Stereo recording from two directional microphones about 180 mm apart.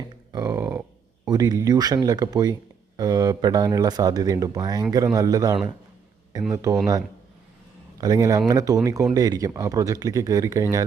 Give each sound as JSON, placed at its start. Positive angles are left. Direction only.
{"t": 0.3, "sound": "a sound", "side_deg": -20}
{"t": 1.3, "sound": "speech", "side_deg": -20}
{"t": 8.0, "sound": "speech", "side_deg": -20}